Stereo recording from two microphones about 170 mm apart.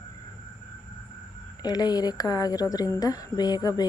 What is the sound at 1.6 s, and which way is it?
A woman's voice, 25° left (ahead or behind).